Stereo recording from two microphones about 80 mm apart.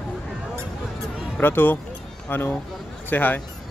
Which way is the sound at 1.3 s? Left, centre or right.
Left.